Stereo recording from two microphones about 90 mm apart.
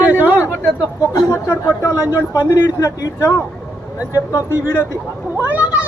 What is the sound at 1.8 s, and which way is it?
Speech, 35° left (ahead or behind).